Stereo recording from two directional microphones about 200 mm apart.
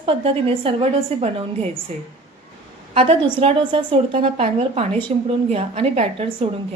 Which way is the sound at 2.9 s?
25° right (ahead or behind).